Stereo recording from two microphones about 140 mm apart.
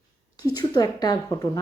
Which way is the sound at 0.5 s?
30° left (ahead or behind).